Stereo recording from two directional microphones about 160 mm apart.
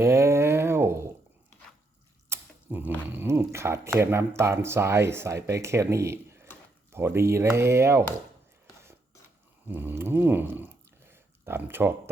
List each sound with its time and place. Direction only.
0.0 s a sound: 15° right (ahead or behind)
2.3 s speech: 10° right (ahead or behind)
9.6 s speech: 15° right (ahead or behind)